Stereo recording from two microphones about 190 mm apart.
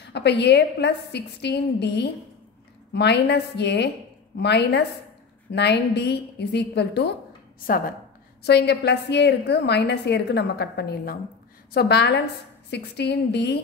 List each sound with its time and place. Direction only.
0.1 s a woman's voice: 60° left (ahead or behind)
8.5 s a woman's voice: 60° left (ahead or behind)